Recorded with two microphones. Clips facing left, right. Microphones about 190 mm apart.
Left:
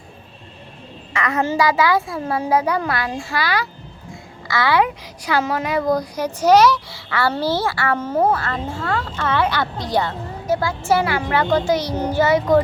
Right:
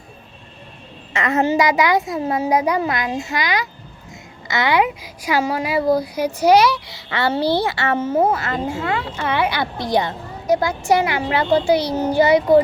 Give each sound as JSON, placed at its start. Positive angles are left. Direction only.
{"t": 1.1, "sound": "a child's voice", "side_deg": -25}
{"t": 7.9, "sound": "a child's voice", "side_deg": -10}